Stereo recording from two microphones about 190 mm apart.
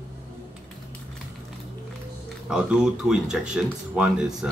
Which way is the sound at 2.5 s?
5° right (ahead or behind).